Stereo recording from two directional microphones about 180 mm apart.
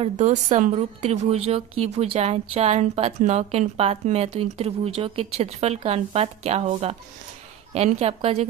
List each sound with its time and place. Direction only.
0.0 s a woman's voice: 40° right (ahead or behind)